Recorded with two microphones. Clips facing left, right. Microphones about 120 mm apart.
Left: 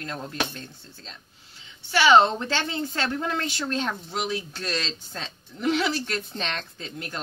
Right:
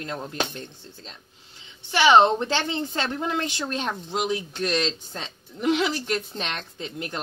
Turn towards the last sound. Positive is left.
turn(degrees=-20)  # may be behind; listen again after turning